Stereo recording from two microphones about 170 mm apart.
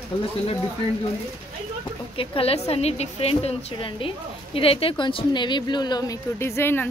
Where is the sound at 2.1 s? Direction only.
35° left (ahead or behind).